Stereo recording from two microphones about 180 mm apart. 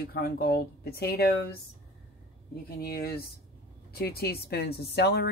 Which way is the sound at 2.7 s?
60° left (ahead or behind).